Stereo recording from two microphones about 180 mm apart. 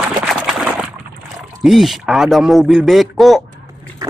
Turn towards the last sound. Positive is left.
turn(degrees=0)  # may be behind; listen again after turning